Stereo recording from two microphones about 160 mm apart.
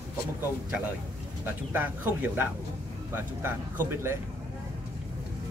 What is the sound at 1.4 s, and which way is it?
Speech, 10° right (ahead or behind).